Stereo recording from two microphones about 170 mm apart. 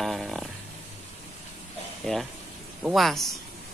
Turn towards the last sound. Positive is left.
turn(degrees=0)  # may be behind; listen again after turning